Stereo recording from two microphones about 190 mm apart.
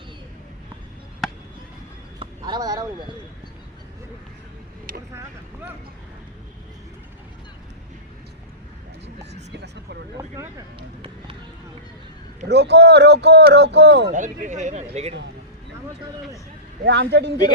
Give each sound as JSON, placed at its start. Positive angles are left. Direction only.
{"t": 2.1, "sound": "a sound", "side_deg": -25}
{"t": 4.9, "sound": "vehicle", "side_deg": -50}
{"t": 9.5, "sound": "a sound", "side_deg": -60}
{"t": 10.8, "sound": "vehicle", "side_deg": -30}
{"t": 12.5, "sound": "speech", "side_deg": -60}
{"t": 14.1, "sound": "speech", "side_deg": -40}
{"t": 16.8, "sound": "speech", "side_deg": -60}